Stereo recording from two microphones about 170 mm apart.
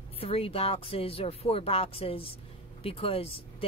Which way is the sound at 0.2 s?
35° left (ahead or behind).